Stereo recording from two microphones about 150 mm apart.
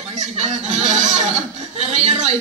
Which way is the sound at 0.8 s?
50° right (ahead or behind).